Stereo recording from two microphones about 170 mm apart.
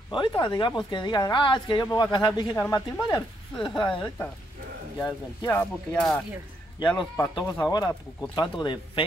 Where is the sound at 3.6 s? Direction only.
25° left (ahead or behind).